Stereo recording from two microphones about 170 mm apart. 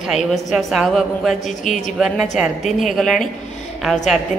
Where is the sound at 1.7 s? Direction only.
45° left (ahead or behind).